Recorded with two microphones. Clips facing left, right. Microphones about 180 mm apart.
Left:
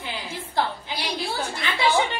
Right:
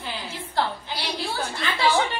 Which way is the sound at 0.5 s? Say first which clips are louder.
Even; 15° left (ahead or behind).